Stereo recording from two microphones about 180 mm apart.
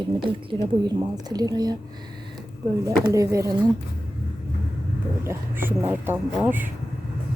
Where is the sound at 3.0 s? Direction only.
15° right (ahead or behind).